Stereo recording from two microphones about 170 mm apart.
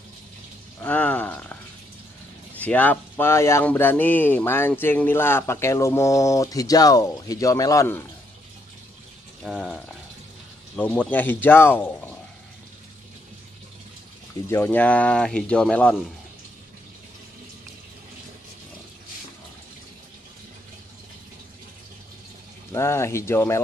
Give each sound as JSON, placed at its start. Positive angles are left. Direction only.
{"t": 0.8, "sound": "speech", "side_deg": 10}
{"t": 2.6, "sound": "speech", "side_deg": 10}
{"t": 9.4, "sound": "speech", "side_deg": 0}
{"t": 10.8, "sound": "speech", "side_deg": 10}
{"t": 14.5, "sound": "speech", "side_deg": 10}
{"t": 22.7, "sound": "speech", "side_deg": 15}